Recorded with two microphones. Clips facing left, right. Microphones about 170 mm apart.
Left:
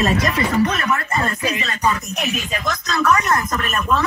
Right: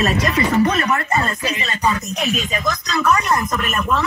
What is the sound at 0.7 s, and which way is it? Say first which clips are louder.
Speech: right 3 dB; 30° right (ahead or behind).